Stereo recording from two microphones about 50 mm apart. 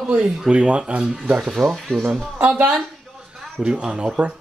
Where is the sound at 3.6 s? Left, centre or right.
Right.